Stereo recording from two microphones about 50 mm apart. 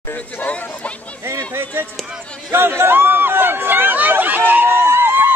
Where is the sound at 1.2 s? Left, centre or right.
Right.